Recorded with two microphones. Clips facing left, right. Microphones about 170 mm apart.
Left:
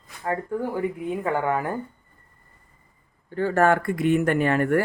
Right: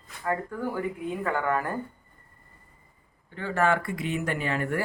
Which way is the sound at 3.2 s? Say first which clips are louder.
Left 5 dB; 40° left (ahead or behind).